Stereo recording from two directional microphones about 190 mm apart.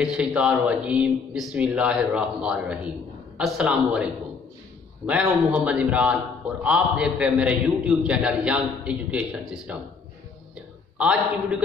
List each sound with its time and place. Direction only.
0.0 s a man's voice: 5° right (ahead or behind)
11.0 s a man's voice: 5° right (ahead or behind)